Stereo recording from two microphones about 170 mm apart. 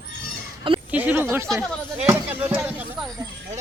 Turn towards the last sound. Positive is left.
turn(degrees=-10)  # may be behind; listen again after turning